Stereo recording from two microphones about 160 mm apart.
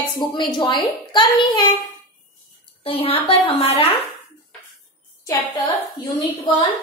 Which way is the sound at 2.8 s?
35° left (ahead or behind).